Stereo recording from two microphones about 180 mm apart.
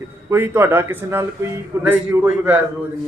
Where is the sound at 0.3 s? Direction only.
15° right (ahead or behind).